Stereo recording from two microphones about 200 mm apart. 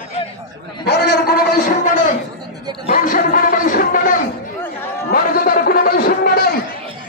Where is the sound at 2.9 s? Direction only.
45° left (ahead or behind).